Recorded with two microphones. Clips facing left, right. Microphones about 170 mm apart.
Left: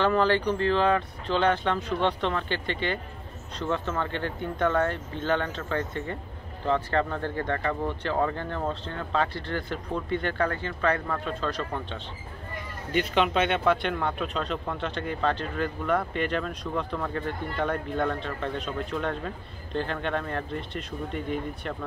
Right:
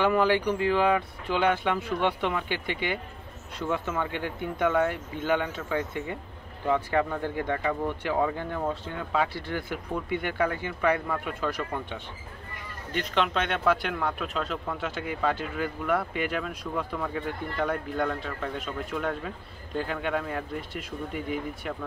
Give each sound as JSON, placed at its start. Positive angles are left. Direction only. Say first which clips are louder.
{"t": 0.0, "sound": "speech", "louder": "even", "side_deg": -10}
{"t": 12.9, "sound": "speech", "louder": "left 3 dB", "side_deg": 5}